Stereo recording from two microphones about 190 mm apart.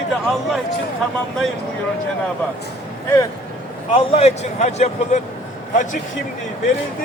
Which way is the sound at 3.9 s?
35° left (ahead or behind).